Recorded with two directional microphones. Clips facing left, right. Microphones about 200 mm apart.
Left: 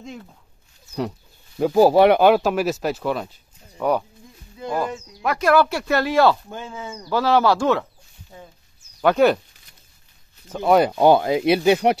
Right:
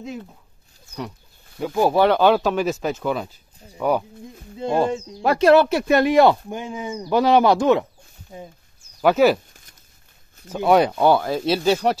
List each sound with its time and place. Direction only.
1.6 s speech: 35° left (ahead or behind)
2.0 s speech: 15° left (ahead or behind); by 4.0 s 5° right (ahead or behind)
4.6 s speech: 25° right (ahead or behind)
9.0 s speech: 5° right (ahead or behind)
10.5 s speech: centre (ahead or behind)
10.9 s speech: 15° left (ahead or behind)